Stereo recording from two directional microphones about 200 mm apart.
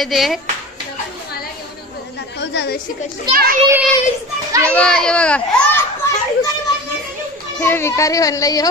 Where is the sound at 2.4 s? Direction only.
60° left (ahead or behind).